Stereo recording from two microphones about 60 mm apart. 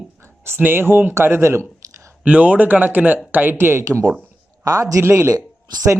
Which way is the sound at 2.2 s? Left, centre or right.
Right.